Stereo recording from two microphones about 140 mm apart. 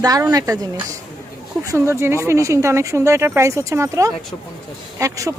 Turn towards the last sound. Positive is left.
turn(degrees=-25)  # may be behind; listen again after turning